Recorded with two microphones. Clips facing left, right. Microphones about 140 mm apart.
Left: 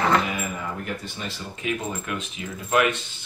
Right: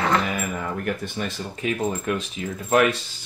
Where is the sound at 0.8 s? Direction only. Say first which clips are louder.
Right 5 dB; 55° right (ahead or behind).